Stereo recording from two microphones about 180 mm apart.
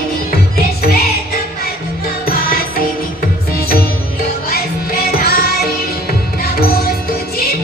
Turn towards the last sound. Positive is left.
turn(degrees=60)  # may be behind; listen again after turning